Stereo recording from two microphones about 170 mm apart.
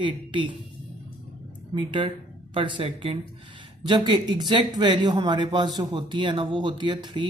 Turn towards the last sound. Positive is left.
turn(degrees=-30)  # may be behind; listen again after turning